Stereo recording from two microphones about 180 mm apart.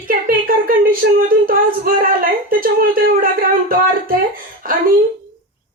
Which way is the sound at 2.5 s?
55° right (ahead or behind).